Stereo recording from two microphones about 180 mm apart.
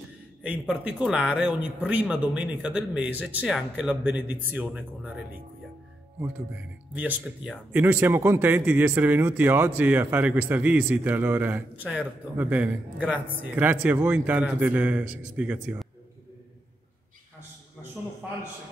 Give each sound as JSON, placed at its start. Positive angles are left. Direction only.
{"t": 0.4, "sound": "speech", "side_deg": -5}
{"t": 6.9, "sound": "speech", "side_deg": -5}